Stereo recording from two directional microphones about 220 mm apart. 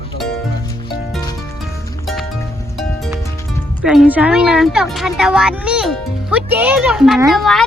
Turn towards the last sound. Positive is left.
turn(degrees=0)  # may be behind; listen again after turning